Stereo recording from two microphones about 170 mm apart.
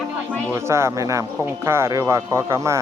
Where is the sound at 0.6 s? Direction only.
15° right (ahead or behind).